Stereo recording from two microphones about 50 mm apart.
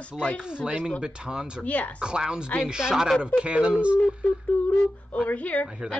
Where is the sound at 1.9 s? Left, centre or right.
Centre.